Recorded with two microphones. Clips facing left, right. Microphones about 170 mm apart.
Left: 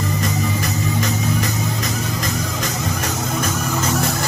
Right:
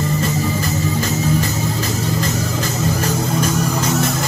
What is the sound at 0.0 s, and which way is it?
Music, 30° right (ahead or behind).